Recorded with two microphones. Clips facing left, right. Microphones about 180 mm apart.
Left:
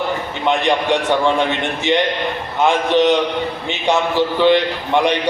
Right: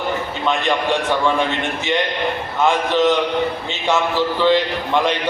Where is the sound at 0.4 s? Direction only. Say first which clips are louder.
Left 3 dB; 20° left (ahead or behind).